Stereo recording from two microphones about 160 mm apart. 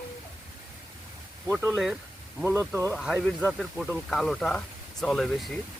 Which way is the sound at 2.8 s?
Centre (ahead or behind).